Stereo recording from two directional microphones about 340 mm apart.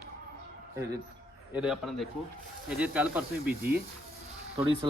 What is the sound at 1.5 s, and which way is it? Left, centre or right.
Speech, centre.